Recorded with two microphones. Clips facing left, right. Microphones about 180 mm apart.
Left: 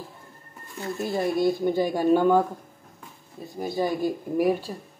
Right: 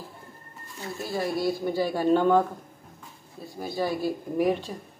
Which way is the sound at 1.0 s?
20° left (ahead or behind).